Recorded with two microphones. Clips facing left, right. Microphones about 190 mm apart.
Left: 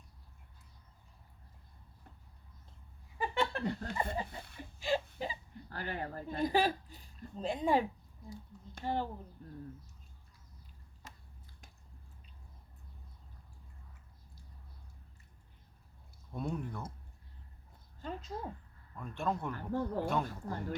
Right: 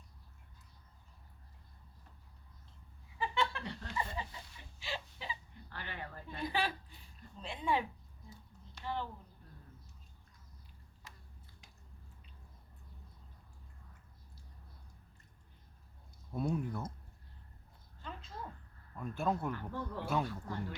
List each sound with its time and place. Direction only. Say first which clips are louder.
3.4 s speech: left 3 dB; 45° left (ahead or behind)
8.7 s a sound: left 5 dB; 45° left (ahead or behind)
16.3 s a man's voice: right 3 dB; 5° right (ahead or behind)
18.0 s a sound: left 6 dB; 45° left (ahead or behind)
18.9 s a man's voice: right 1 dB; 5° right (ahead or behind)
19.5 s speech: left 6 dB; 45° left (ahead or behind)